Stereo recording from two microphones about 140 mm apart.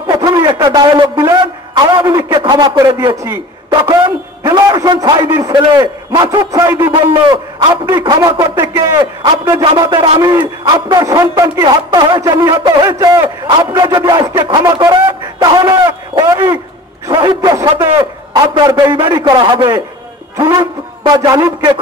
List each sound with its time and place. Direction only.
0.0 s a sound: 30° right (ahead or behind)
2.2 s a man's voice: 30° right (ahead or behind)
6.8 s a man's voice: 35° right (ahead or behind)
9.2 s a man's voice: 35° right (ahead or behind)
14.6 s a sound: 30° right (ahead or behind)
17.1 s a man's voice: 30° right (ahead or behind)
21.0 s a man's voice: 35° right (ahead or behind)